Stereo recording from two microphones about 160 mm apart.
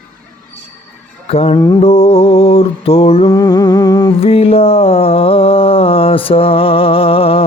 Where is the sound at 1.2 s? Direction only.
40° left (ahead or behind).